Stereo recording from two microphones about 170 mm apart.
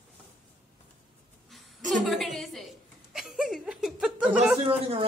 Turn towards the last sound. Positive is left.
turn(degrees=-35)  # may be behind; listen again after turning